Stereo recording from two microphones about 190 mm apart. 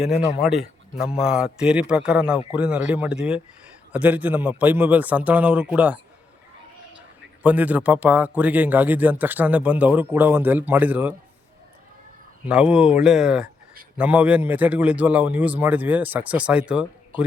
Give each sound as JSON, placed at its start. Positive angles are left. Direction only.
{"t": 0.4, "sound": "a man's voice", "side_deg": 0}
{"t": 7.4, "sound": "speech", "side_deg": -10}
{"t": 12.5, "sound": "a man's voice", "side_deg": -5}